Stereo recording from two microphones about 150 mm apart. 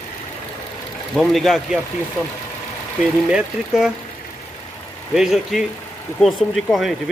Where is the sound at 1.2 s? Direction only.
Centre (ahead or behind).